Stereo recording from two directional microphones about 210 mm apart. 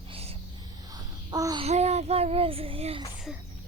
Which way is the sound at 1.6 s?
30° right (ahead or behind).